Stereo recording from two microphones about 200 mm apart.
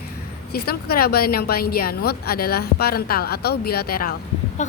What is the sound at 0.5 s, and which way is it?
A woman's voice, 50° left (ahead or behind).